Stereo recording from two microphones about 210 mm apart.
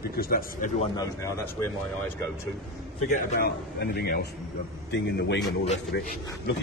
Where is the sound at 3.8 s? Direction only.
50° left (ahead or behind).